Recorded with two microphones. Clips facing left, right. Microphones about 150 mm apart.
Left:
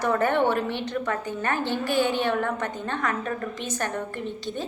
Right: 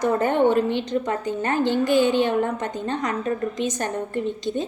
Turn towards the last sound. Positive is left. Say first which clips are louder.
# right 6 dB
turn(degrees=-20)  # may be behind; listen again after turning